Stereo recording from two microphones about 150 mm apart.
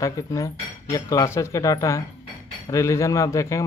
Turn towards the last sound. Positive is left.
turn(degrees=20)  # may be behind; listen again after turning